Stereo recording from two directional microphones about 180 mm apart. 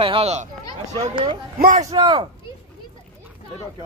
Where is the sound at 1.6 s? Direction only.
45° right (ahead or behind).